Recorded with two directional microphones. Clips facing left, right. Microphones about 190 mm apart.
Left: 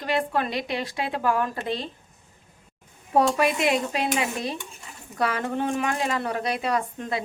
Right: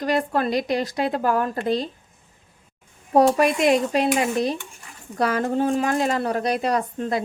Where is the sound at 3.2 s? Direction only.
40° right (ahead or behind).